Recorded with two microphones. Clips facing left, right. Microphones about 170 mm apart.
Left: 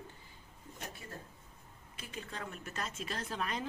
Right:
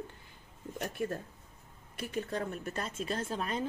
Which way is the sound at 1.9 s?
65° right (ahead or behind).